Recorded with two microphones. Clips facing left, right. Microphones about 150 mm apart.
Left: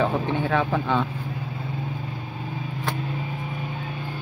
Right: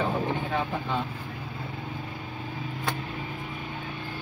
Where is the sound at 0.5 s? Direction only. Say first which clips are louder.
Left 6 dB; 80° left.